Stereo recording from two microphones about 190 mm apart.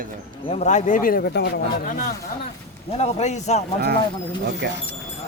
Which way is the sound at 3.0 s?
35° left (ahead or behind).